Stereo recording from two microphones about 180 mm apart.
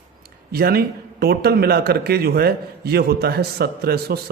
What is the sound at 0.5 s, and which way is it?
A man's voice, 60° right (ahead or behind).